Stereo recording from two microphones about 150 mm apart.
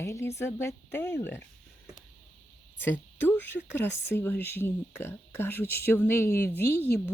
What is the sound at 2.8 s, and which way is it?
A woman's voice, 15° left (ahead or behind).